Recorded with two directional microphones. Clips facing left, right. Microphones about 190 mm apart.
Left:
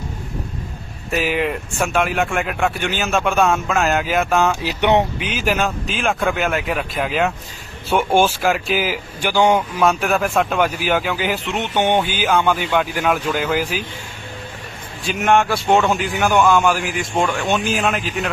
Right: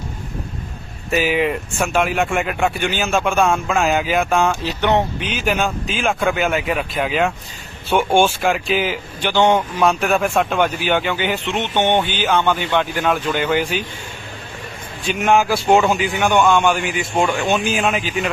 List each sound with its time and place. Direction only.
1.1 s speech: centre (ahead or behind)
4.6 s speech: 15° left (ahead or behind)
5.2 s speech: centre (ahead or behind)
15.0 s speech: centre (ahead or behind)